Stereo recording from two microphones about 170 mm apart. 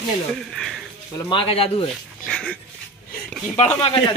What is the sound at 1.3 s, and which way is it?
Speech, 30° left (ahead or behind).